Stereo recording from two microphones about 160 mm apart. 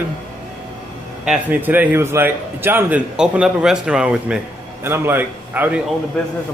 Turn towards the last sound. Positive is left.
turn(degrees=5)  # may be behind; listen again after turning